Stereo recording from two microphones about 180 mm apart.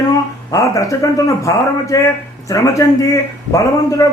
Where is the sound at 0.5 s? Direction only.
20° left (ahead or behind).